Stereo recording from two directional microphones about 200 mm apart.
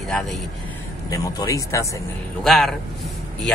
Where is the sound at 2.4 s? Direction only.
Centre (ahead or behind).